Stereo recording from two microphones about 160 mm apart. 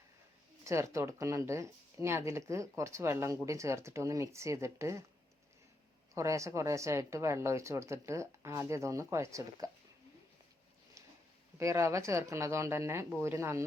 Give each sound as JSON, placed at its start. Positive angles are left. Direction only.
{"t": 0.6, "sound": "speech", "side_deg": -20}
{"t": 6.1, "sound": "speech", "side_deg": -20}
{"t": 11.5, "sound": "speech", "side_deg": -20}